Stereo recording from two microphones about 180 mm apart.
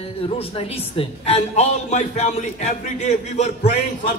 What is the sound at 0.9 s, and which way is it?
A man's voice, 35° left (ahead or behind).